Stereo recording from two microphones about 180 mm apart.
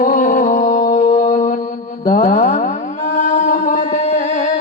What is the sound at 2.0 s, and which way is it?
Mantra, 50° left (ahead or behind).